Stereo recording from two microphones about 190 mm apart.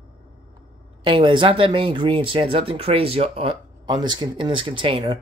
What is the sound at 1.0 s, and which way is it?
Speech, 25° right (ahead or behind).